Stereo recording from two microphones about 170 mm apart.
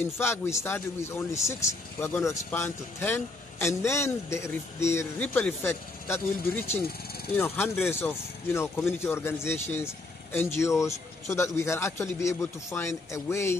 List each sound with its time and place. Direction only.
0.0 s a man's voice: 15° left (ahead or behind)